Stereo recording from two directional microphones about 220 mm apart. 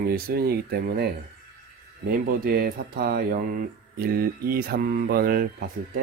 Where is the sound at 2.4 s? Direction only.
45° right (ahead or behind).